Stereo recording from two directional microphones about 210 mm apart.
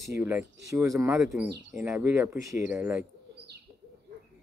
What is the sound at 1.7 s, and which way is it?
Speech, 10° right (ahead or behind).